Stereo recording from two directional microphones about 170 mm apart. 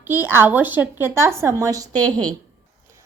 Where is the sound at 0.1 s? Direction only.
15° right (ahead or behind).